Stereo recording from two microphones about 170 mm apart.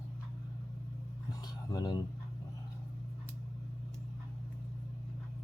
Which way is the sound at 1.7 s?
25° left (ahead or behind).